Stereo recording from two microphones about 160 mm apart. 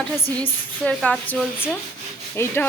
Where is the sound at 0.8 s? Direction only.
5° left (ahead or behind).